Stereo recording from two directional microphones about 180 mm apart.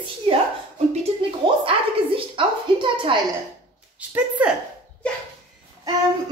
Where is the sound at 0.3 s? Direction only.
30° right (ahead or behind).